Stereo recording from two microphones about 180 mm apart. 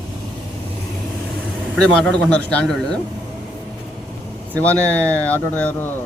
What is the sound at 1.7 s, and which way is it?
A man's voice, 5° left (ahead or behind).